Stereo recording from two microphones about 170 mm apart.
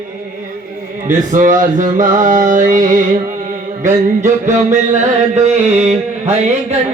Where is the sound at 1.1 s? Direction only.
50° right (ahead or behind).